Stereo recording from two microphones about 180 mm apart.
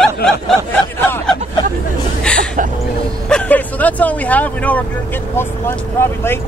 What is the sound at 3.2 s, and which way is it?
Speech, 5° left (ahead or behind).